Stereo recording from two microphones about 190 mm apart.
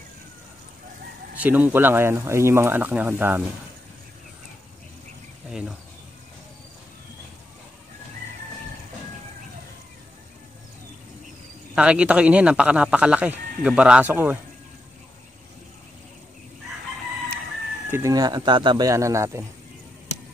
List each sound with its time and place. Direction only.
1.4 s speech: 10° right (ahead or behind)
5.5 s speech: 5° right (ahead or behind)
11.7 s speech: 5° right (ahead or behind)
17.9 s speech: 20° right (ahead or behind)